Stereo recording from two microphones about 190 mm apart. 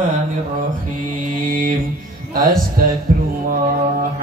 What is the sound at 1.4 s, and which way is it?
Music, 45° right (ahead or behind).